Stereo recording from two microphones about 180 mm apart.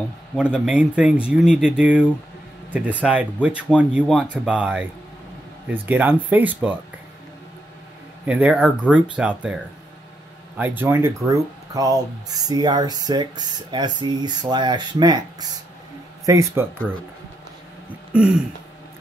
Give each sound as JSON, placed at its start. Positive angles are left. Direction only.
{"t": 0.4, "sound": "speech", "side_deg": -5}
{"t": 8.3, "sound": "speech", "side_deg": -5}
{"t": 10.6, "sound": "speech", "side_deg": -10}
{"t": 16.3, "sound": "speech", "side_deg": -15}
{"t": 18.1, "sound": "throat clearing", "side_deg": -5}